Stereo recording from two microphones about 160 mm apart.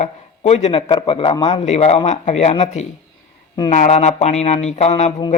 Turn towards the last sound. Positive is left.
turn(degrees=45)  # may be behind; listen again after turning